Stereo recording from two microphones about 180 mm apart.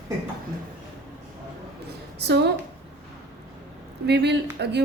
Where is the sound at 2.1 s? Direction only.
70° right (ahead or behind).